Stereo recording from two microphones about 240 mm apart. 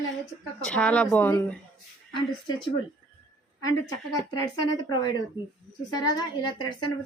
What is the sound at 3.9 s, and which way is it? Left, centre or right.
A woman's voice, centre.